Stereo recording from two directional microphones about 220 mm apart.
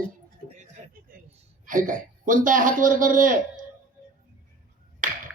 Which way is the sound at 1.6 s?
35° right (ahead or behind).